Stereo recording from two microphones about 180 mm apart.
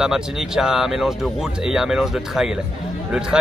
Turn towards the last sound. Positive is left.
turn(degrees=-5)  # may be behind; listen again after turning